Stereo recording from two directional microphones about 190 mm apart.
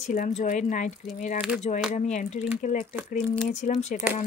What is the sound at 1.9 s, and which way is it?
Speech, 40° left (ahead or behind).